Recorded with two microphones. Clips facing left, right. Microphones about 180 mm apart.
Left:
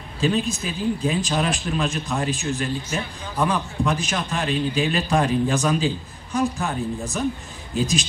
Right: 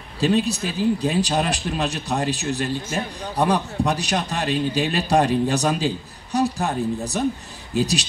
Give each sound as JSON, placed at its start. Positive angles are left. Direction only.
{"t": 0.2, "sound": "a man's voice", "side_deg": -35}